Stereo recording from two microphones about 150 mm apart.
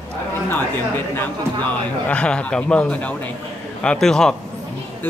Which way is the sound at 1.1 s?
15° left (ahead or behind).